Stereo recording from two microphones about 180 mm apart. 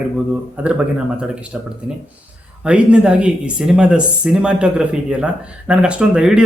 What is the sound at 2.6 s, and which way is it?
A man's voice, 5° right (ahead or behind).